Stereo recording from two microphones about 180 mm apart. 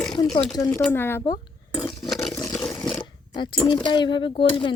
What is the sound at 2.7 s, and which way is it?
Roaring cats, 20° left (ahead or behind).